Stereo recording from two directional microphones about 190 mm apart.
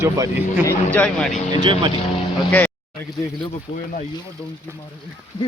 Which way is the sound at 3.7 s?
45° left (ahead or behind).